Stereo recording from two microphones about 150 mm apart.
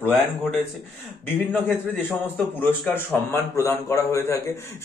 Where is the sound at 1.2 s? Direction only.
15° left (ahead or behind).